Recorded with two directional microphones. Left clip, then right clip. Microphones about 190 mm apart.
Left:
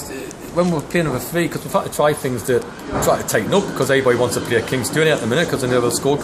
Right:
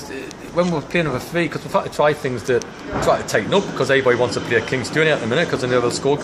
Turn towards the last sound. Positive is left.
turn(degrees=0)  # may be behind; listen again after turning